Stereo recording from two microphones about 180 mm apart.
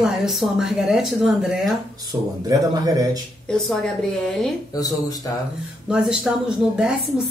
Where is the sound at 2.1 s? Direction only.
20° right (ahead or behind).